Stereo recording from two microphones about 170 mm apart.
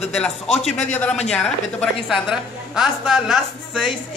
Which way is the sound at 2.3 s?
5° right (ahead or behind).